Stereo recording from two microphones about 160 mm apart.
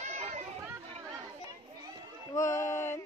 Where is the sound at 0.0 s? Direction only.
45° right (ahead or behind).